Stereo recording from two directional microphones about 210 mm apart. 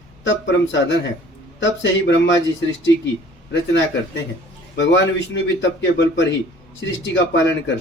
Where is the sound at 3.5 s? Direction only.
60° left (ahead or behind).